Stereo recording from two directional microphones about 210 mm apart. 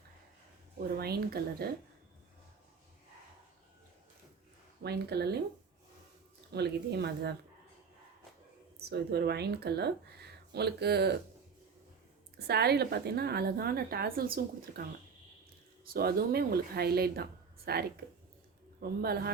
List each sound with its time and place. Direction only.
0.9 s speech: 45° right (ahead or behind)
4.8 s speech: 50° right (ahead or behind)
6.5 s speech: 50° right (ahead or behind)
8.8 s speech: 50° right (ahead or behind)
12.5 s speech: 50° right (ahead or behind)
15.9 s speech: 45° right (ahead or behind)